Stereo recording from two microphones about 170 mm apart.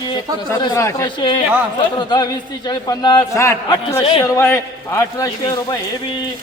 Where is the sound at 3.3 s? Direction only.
15° left (ahead or behind).